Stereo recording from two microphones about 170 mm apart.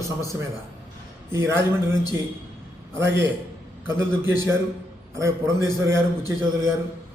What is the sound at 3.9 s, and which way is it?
A man's voice, 15° right (ahead or behind).